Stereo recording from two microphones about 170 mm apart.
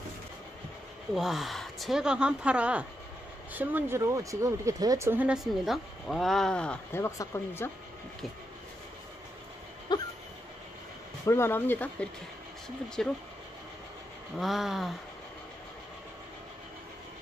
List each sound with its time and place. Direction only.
1.1 s speech: centre (ahead or behind); by 7.7 s 15° left (ahead or behind)
9.9 s a sound: 25° left (ahead or behind)
11.2 s speech: 15° left (ahead or behind)
14.3 s speech: centre (ahead or behind)